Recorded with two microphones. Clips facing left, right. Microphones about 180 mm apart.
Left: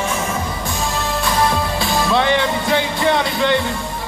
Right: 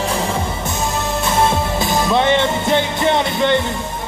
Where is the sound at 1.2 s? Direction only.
25° right (ahead or behind).